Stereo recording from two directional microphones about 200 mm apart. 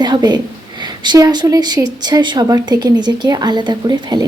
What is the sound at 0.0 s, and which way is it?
Speech, 20° right (ahead or behind).